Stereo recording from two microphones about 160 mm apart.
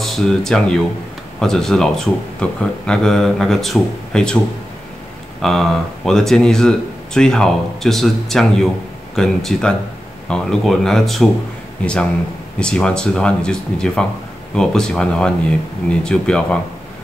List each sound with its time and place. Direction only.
0.0 s speech: centre (ahead or behind)
5.4 s speech: centre (ahead or behind)